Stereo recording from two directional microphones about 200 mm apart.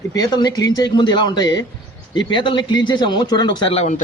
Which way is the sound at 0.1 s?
20° left (ahead or behind).